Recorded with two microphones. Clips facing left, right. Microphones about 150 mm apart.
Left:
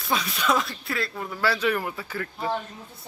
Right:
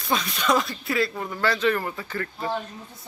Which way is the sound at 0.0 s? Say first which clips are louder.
Right 1 dB; 5° left (ahead or behind).